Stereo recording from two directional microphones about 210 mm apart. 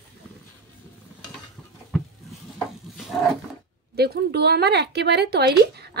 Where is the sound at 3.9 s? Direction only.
50° right (ahead or behind).